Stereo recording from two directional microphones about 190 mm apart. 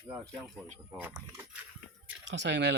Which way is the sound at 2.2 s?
65° right (ahead or behind).